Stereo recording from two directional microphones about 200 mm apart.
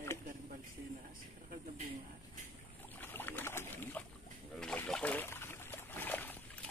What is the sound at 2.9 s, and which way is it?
Boat, 10° left (ahead or behind).